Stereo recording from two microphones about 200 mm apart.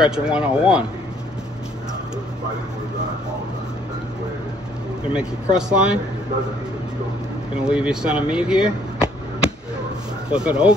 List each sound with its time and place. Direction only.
0.0 s speech: 5° right (ahead or behind)
5.1 s speech: 5° right (ahead or behind)
7.6 s speech: 5° right (ahead or behind)
10.3 s speech: 5° right (ahead or behind)